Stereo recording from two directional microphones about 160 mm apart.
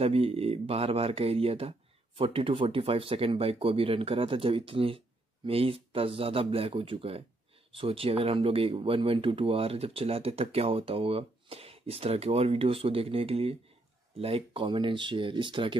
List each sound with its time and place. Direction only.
0.0 s speech: 40° right (ahead or behind)